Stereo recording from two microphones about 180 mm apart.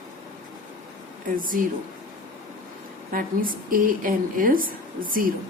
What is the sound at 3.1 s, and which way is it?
Speech, 50° right (ahead or behind).